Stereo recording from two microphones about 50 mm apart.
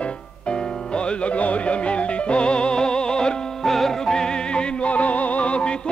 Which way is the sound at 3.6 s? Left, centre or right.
Centre.